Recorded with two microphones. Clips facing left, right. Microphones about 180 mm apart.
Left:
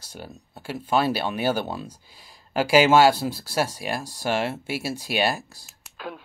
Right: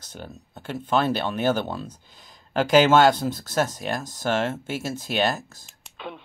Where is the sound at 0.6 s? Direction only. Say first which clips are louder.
Even; 10° left (ahead or behind).